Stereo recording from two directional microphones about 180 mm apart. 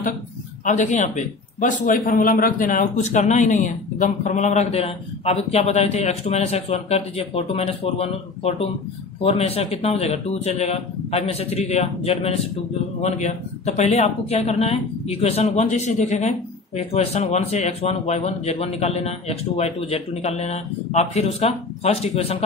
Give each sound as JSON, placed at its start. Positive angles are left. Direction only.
{"t": 0.7, "sound": "speech", "side_deg": 45}